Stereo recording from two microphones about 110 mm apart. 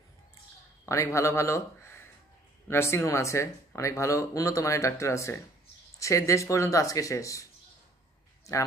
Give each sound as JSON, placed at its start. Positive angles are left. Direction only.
{"t": 0.8, "sound": "speech", "side_deg": 25}